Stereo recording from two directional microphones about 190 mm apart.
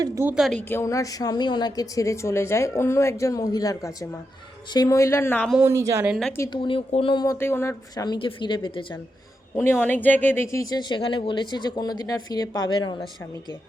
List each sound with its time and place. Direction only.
0.0 s a woman's voice: 15° right (ahead or behind)
0.3 s a woman's voice: centre (ahead or behind)
0.7 s a woman's voice: 15° left (ahead or behind)
5.6 s a woman's voice: 15° right (ahead or behind)
6.1 s a woman's voice: centre (ahead or behind)
6.3 s a woman's voice: 15° left (ahead or behind)
6.6 s speech: 30° left (ahead or behind)
9.8 s speech: 10° left (ahead or behind); by 13.1 s 25° left (ahead or behind)